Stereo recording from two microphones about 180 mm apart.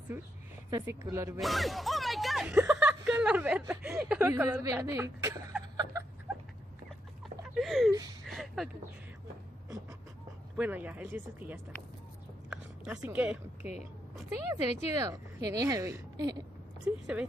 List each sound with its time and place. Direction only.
0.7 s a woman's voice: 20° right (ahead or behind)
1.4 s a woman's voice: centre (ahead or behind); by 5.4 s 15° right (ahead or behind)
7.5 s speech: centre (ahead or behind)
7.9 s speech: 20° right (ahead or behind)
8.3 s a sound: centre (ahead or behind)
10.5 s a woman's voice: 10° right (ahead or behind)
12.4 s a sound: 5° right (ahead or behind)
13.1 s a woman's voice: 5° right (ahead or behind)
17.0 s speech: 5° right (ahead or behind)